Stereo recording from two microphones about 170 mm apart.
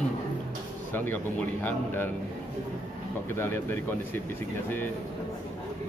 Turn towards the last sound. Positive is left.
turn(degrees=10)  # may be behind; listen again after turning